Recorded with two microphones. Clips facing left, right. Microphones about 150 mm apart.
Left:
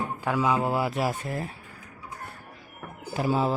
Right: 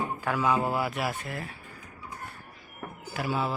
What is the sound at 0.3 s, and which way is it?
Speech, 15° left (ahead or behind).